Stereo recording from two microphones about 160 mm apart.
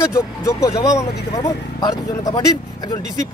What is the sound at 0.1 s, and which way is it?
Speech, 20° left (ahead or behind).